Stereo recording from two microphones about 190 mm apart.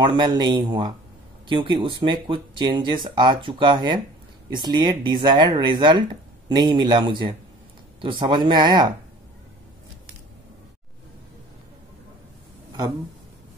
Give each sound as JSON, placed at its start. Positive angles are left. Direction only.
{"t": 0.0, "sound": "speech", "side_deg": -25}